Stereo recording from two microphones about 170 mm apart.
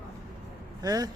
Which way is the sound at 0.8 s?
20° right (ahead or behind).